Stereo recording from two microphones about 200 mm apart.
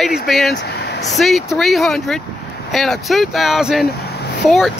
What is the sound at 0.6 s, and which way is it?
Vehicle, 55° left (ahead or behind).